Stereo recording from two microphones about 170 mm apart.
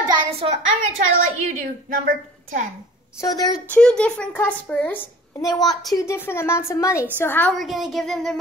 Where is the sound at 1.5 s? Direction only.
50° right (ahead or behind).